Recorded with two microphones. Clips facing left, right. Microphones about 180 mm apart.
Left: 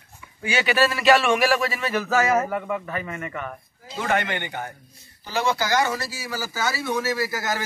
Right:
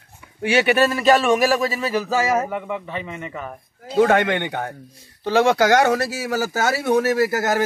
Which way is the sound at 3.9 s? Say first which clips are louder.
Right 9 dB; 60° right (ahead or behind).